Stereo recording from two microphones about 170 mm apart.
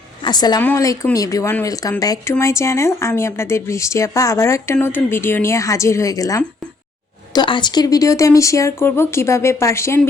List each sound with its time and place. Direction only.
0.3 s speech: 25° left (ahead or behind)